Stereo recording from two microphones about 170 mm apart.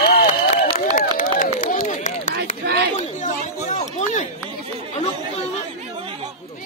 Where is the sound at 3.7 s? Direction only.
45° left (ahead or behind).